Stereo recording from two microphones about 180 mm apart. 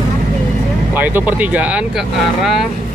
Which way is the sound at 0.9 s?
10° right (ahead or behind).